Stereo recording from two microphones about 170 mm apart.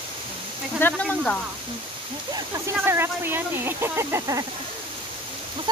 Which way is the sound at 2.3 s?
15° right (ahead or behind).